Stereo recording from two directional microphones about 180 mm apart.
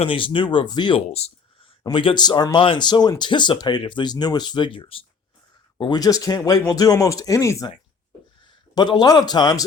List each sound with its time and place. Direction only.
0.0 s speech: 30° left (ahead or behind)
8.7 s speech: 25° left (ahead or behind)